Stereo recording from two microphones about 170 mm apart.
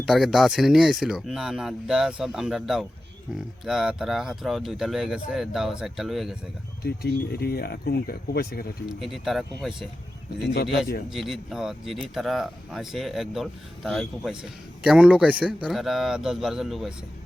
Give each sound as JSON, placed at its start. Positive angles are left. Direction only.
{"t": 0.1, "sound": "speech", "side_deg": 0}
{"t": 6.8, "sound": "speech", "side_deg": 70}
{"t": 8.9, "sound": "speech", "side_deg": 0}
{"t": 11.1, "sound": "speech", "side_deg": 0}